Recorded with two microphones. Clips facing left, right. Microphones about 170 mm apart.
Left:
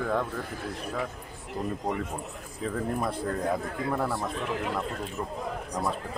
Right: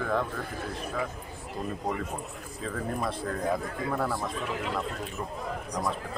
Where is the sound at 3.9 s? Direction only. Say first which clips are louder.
Left 1 dB; 5° left (ahead or behind).